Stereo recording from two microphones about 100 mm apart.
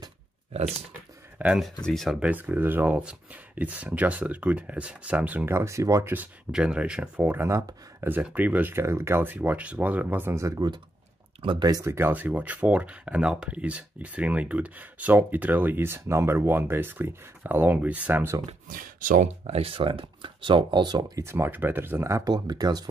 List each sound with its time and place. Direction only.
1.4 s speech: 15° right (ahead or behind)
1.9 s speech: centre (ahead or behind)
2.1 s speech: 15° right (ahead or behind); by 6.1 s 30° right (ahead or behind)
6.5 s speech: 10° right (ahead or behind)
7.4 s speech: 25° right (ahead or behind)
11.4 s speech: 45° right (ahead or behind)
11.8 s speech: 25° right (ahead or behind)
19.2 s speech: 90° right; by 21.2 s 45° right (ahead or behind)
21.2 s speech: 25° right (ahead or behind); by 22.8 s 40° right (ahead or behind)